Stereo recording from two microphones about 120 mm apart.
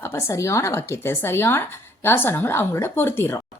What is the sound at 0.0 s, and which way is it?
A woman's voice, 25° left (ahead or behind).